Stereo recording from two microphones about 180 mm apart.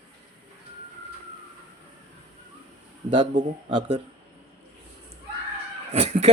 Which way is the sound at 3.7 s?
30° right (ahead or behind).